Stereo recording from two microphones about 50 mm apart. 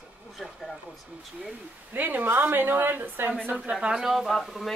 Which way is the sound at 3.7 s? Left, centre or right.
Centre.